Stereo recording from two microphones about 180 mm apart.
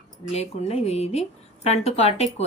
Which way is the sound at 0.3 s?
35° left (ahead or behind).